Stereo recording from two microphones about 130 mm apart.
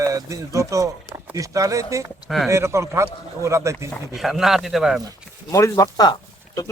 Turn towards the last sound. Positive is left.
turn(degrees=30)  # may be behind; listen again after turning